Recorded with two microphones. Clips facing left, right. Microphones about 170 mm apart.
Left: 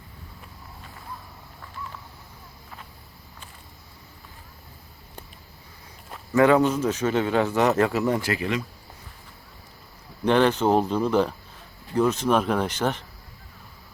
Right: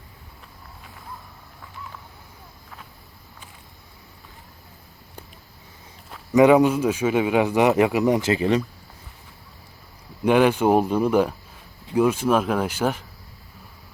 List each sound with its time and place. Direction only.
6.3 s speech: 15° right (ahead or behind)
10.2 s speech: 10° right (ahead or behind)